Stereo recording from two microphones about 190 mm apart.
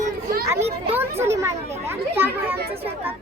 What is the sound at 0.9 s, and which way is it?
Speech, 15° right (ahead or behind).